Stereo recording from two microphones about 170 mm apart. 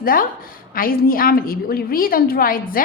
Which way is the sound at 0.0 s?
55° left (ahead or behind).